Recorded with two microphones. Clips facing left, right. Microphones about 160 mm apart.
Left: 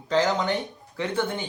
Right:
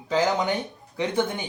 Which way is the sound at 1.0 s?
20° right (ahead or behind).